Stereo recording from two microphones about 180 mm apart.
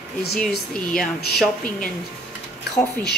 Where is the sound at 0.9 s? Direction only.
Centre (ahead or behind).